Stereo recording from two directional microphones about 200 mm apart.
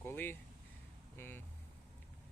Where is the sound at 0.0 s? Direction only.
10° left (ahead or behind).